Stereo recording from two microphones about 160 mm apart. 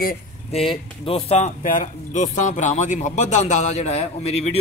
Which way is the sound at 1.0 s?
40° left (ahead or behind).